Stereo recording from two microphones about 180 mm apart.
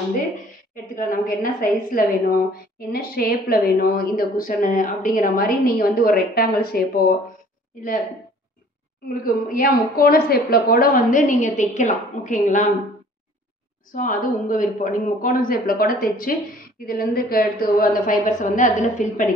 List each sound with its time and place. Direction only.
0.9 s a woman's voice: 50° left (ahead or behind)
9.1 s a woman's voice: 50° left (ahead or behind)
13.9 s a woman's voice: 45° left (ahead or behind)